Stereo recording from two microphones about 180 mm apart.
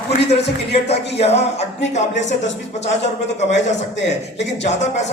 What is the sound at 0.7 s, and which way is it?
Speech, 35° left (ahead or behind).